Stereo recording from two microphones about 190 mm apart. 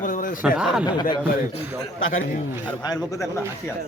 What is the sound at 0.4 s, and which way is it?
Speech, 5° right (ahead or behind).